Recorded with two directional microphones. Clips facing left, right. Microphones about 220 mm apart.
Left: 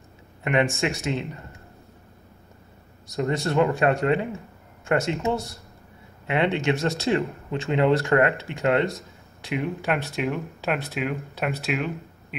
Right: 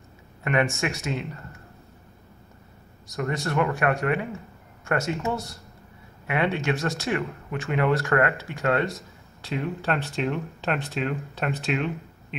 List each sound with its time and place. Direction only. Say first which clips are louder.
0.4 s speech: left 2 dB; 20° left (ahead or behind)
3.2 s speech: left 4 dB; 25° left (ahead or behind); by 12.4 s 5° left (ahead or behind)